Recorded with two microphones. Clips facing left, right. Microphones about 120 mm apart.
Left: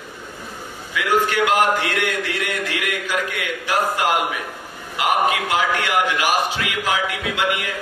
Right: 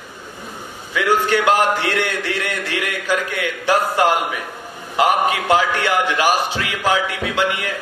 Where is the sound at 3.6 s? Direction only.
30° right (ahead or behind).